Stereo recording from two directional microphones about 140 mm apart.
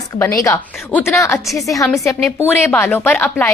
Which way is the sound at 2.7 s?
10° left (ahead or behind).